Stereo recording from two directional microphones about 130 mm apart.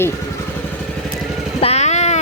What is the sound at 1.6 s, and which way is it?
Vehicle, 55° left (ahead or behind).